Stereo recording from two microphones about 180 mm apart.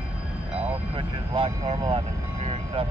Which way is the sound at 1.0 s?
30° right (ahead or behind).